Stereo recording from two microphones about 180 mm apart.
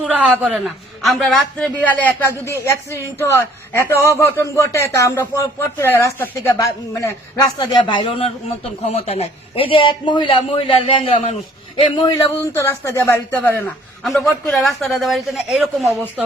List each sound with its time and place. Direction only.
0.0 s a man's voice: 5° right (ahead or behind); by 7.1 s 15° left (ahead or behind)
7.8 s a man's voice: 25° left (ahead or behind)
12.0 s a man's voice: 15° left (ahead or behind); by 16.2 s centre (ahead or behind)